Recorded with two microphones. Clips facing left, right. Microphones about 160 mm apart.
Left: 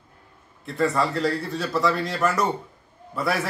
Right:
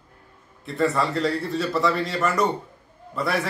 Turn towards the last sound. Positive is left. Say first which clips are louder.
# even
turn(degrees=0)  # may be behind; listen again after turning